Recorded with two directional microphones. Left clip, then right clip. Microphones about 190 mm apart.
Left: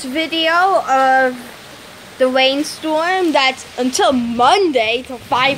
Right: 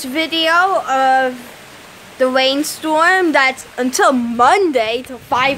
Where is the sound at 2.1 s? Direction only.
15° right (ahead or behind).